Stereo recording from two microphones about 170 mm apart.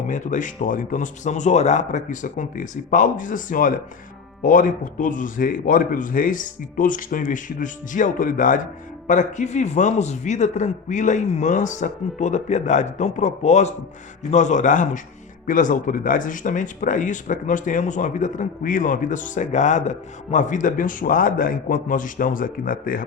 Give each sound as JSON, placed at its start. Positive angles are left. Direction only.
{"t": 0.1, "sound": "speech", "side_deg": 50}